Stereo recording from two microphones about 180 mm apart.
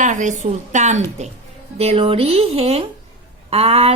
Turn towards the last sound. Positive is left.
turn(degrees=-35)  # may be behind; listen again after turning